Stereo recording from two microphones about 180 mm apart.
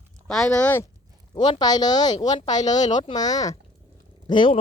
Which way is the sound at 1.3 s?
25° left (ahead or behind).